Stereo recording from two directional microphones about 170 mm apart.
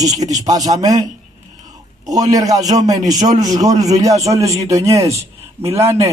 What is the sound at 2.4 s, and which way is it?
A man's voice, 20° right (ahead or behind).